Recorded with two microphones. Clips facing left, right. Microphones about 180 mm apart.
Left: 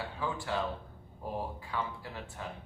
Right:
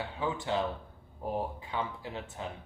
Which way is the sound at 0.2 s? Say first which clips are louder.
Right 3 dB; 20° right (ahead or behind).